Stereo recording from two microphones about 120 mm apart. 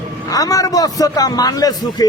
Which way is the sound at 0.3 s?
30° left (ahead or behind).